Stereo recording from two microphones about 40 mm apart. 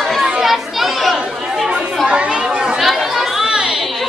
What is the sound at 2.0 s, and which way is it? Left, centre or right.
Chatter, right.